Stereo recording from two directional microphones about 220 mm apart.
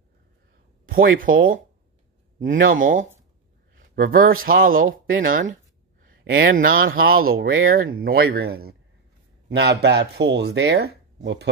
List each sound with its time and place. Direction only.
0.8 s a sound: 40° right (ahead or behind)
1.2 s speech: 40° right (ahead or behind)
2.6 s speech: 40° right (ahead or behind)
6.2 s speech: 60° right (ahead or behind)
6.5 s speech: 40° right (ahead or behind); by 7.9 s 60° right (ahead or behind)
7.9 s speech: 45° right (ahead or behind)